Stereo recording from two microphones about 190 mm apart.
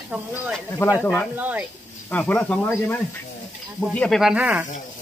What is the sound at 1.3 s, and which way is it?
Speech, 10° right (ahead or behind).